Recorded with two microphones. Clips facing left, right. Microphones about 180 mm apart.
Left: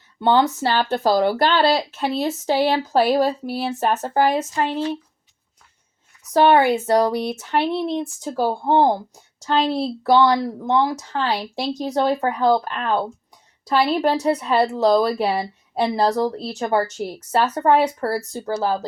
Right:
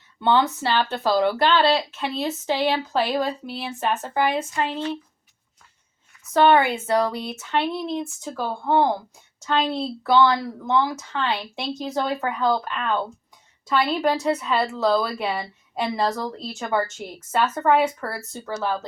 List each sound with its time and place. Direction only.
0.2 s speech: 40° left (ahead or behind)
6.5 s speech: 35° left (ahead or behind)